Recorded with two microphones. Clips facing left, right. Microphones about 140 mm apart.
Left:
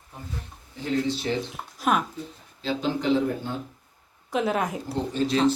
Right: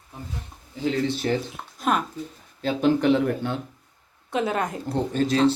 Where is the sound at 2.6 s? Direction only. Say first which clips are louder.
Right 6 dB; 55° right (ahead or behind).